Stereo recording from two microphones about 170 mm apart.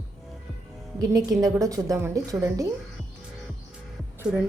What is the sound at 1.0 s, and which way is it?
A woman's voice, 20° right (ahead or behind).